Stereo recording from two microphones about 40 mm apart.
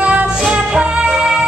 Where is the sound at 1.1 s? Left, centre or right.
Centre.